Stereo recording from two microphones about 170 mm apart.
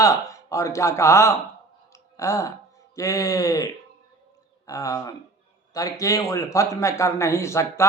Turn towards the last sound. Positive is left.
turn(degrees=15)  # may be behind; listen again after turning